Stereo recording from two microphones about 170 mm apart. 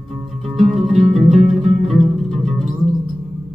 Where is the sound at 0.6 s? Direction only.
45° right (ahead or behind).